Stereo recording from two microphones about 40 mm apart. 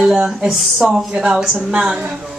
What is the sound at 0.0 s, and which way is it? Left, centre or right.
Speech, right.